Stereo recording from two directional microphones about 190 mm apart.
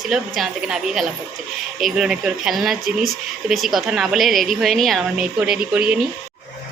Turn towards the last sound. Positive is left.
turn(degrees=-5)  # may be behind; listen again after turning